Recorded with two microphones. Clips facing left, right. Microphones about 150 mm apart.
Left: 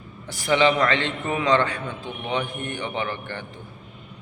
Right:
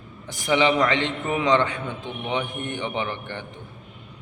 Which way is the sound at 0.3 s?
15° right (ahead or behind).